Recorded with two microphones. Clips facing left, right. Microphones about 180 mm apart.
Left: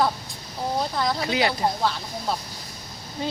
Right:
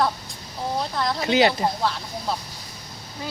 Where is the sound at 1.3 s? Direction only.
25° right (ahead or behind).